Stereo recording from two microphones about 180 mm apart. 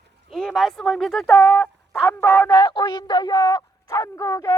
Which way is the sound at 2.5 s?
25° left (ahead or behind).